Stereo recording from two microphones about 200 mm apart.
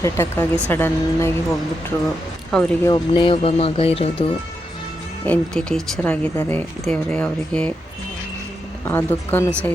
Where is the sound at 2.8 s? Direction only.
25° left (ahead or behind).